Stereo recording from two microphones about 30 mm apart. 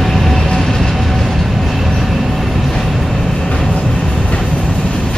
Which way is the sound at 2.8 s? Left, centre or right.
Centre.